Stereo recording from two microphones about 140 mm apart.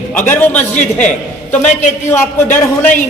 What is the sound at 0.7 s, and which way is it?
Speech, 60° left (ahead or behind).